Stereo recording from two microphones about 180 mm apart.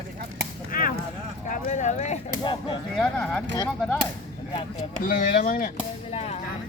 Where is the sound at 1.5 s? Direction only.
45° left (ahead or behind).